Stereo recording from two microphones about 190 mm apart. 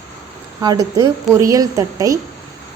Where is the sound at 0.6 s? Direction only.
20° right (ahead or behind).